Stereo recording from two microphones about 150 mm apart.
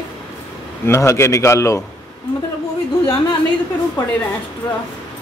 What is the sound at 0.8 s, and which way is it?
A man's voice, 20° left (ahead or behind).